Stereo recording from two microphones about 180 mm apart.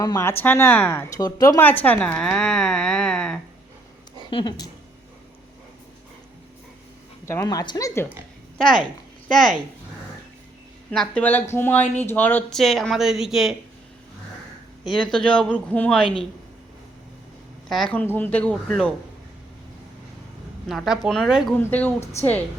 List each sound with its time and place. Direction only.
0.0 s speech: 15° left (ahead or behind)
1.8 s a sound: 10° left (ahead or behind)
4.3 s a woman's voice: 25° left (ahead or behind)
7.3 s a woman's voice: 15° left (ahead or behind)
8.5 s speech: 5° left (ahead or behind)
10.9 s speech: 5° left (ahead or behind)
15.0 s speech: 5° left (ahead or behind)
17.7 s speech: 5° left (ahead or behind)
20.7 s speech: centre (ahead or behind)